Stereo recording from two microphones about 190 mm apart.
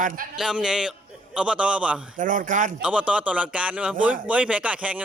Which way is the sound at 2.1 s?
45° right (ahead or behind).